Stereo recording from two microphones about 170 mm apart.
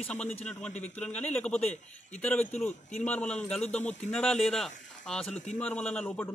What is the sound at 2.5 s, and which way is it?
Speech, 40° left (ahead or behind).